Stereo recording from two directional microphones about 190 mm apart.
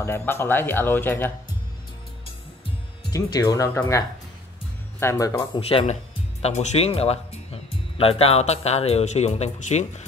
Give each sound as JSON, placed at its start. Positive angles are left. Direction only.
{"t": 0.0, "sound": "speech", "side_deg": 10}
{"t": 3.1, "sound": "speech", "side_deg": 20}
{"t": 5.0, "sound": "speech", "side_deg": 15}
{"t": 5.6, "sound": "speech", "side_deg": 30}